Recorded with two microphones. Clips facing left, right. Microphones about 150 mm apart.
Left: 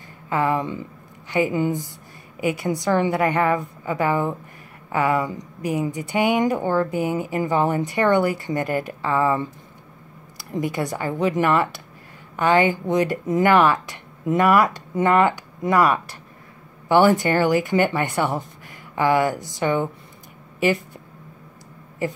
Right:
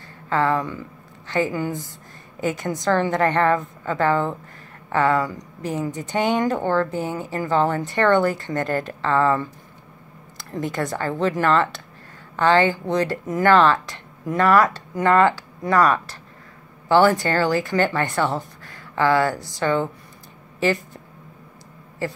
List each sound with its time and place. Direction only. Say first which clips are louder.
0.3 s a woman's voice: right 1 dB; 15° left (ahead or behind)
22.0 s a woman's voice: left 2 dB; 15° left (ahead or behind)